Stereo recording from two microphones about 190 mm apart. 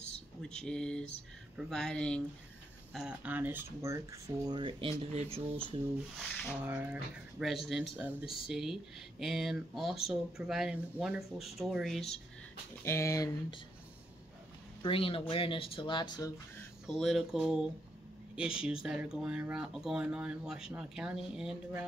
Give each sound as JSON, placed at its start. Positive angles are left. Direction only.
{"t": 0.4, "sound": "speech", "side_deg": 5}
{"t": 6.1, "sound": "speech", "side_deg": 0}
{"t": 6.6, "sound": "speech", "side_deg": -10}
{"t": 12.8, "sound": "speech", "side_deg": 15}
{"t": 14.8, "sound": "speech", "side_deg": 30}
{"t": 16.8, "sound": "speech", "side_deg": 0}